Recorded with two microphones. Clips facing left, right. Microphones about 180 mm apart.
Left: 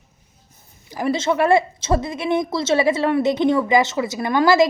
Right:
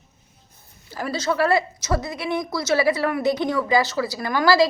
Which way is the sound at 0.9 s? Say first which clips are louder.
Left 4 dB; 20° left (ahead or behind).